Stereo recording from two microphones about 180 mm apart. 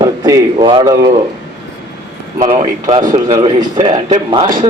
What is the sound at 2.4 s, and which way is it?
A man's voice, 30° right (ahead or behind).